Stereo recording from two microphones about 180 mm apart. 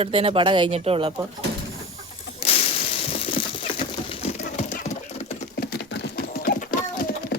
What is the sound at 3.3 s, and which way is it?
Patter, 30° left (ahead or behind).